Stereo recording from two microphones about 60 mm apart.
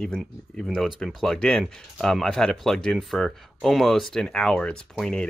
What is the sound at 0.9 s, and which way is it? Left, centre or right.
Speech, centre.